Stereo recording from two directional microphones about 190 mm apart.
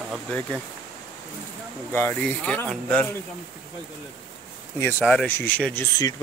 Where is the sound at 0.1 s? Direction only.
10° left (ahead or behind).